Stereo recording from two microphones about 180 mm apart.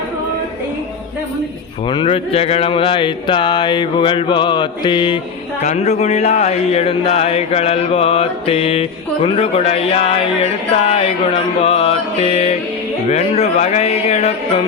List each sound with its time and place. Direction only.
1.9 s mantra: 30° left (ahead or behind)
5.6 s speech: 40° left (ahead or behind)